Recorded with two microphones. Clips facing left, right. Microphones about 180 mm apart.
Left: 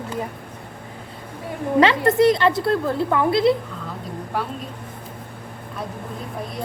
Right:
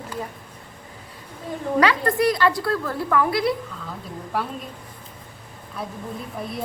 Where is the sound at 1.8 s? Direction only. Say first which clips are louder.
Left 5 dB; 25° left (ahead or behind).